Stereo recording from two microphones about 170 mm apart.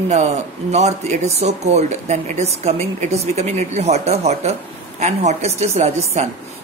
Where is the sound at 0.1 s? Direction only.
40° right (ahead or behind).